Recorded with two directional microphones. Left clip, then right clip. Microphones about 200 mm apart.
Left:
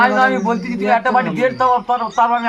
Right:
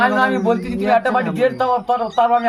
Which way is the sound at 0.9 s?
40° right (ahead or behind).